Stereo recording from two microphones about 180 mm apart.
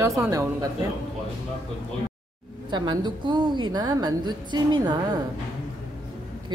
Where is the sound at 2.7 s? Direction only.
25° right (ahead or behind).